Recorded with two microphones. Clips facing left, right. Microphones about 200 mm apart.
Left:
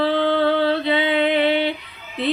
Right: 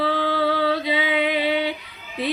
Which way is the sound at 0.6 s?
10° right (ahead or behind).